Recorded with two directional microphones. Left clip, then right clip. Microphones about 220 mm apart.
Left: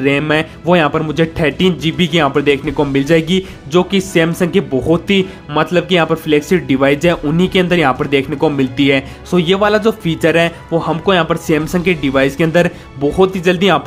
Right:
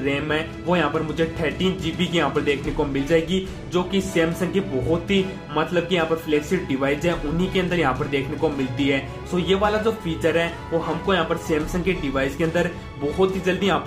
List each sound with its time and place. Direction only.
0.0 s speech: 45° left (ahead or behind)